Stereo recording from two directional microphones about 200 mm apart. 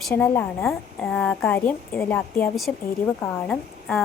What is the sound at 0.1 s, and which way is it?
A woman's voice, 10° left (ahead or behind).